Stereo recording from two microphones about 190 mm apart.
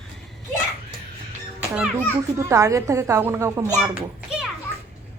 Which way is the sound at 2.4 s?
15° right (ahead or behind).